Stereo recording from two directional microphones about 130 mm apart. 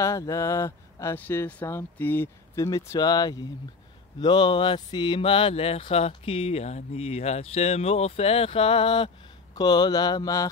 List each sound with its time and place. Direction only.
0.0 s speech: 25° left (ahead or behind); by 9.1 s 40° left (ahead or behind)
9.6 s speech: 30° left (ahead or behind)